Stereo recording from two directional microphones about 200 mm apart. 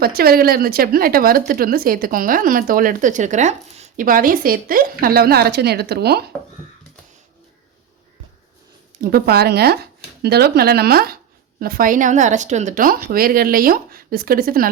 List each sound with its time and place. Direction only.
0.0 s speech: 50° right (ahead or behind)
9.0 s speech: 50° right (ahead or behind)